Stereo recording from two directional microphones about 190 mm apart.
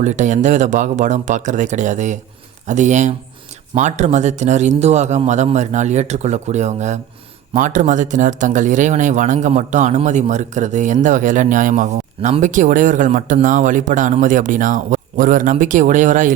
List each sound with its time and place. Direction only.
0.0 s speech: 40° right (ahead or behind)